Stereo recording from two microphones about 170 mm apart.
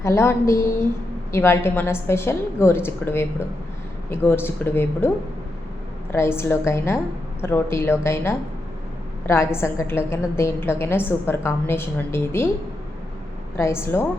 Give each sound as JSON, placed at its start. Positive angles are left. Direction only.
{"t": 0.0, "sound": "a woman's voice", "side_deg": 15}
{"t": 13.6, "sound": "a woman's voice", "side_deg": 15}